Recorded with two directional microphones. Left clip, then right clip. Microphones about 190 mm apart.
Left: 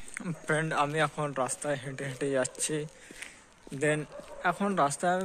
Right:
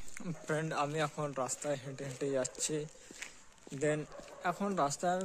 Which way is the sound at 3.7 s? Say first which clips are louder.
Left 5 dB; centre (ahead or behind).